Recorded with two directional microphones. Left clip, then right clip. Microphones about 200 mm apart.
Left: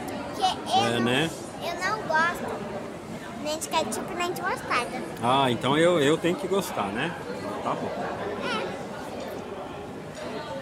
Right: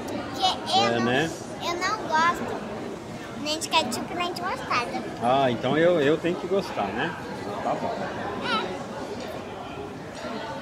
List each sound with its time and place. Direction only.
0.4 s children playing: 20° left (ahead or behind)
3.4 s a woman's voice: 10° left (ahead or behind)
5.2 s speech: 25° left (ahead or behind)